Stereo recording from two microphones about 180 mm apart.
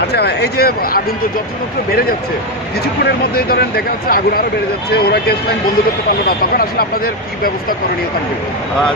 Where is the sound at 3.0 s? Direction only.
60° left (ahead or behind).